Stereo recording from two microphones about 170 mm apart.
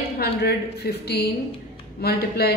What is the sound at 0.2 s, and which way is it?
Speech, 70° left (ahead or behind).